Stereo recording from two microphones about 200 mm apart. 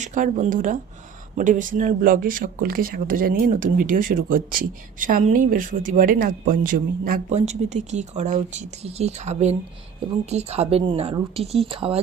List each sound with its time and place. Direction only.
0.0 s a woman's voice: 40° right (ahead or behind)